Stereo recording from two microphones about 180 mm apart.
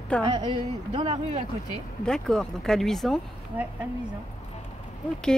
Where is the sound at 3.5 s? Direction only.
10° right (ahead or behind).